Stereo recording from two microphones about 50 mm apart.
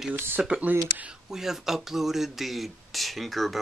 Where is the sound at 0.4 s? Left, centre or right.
Centre.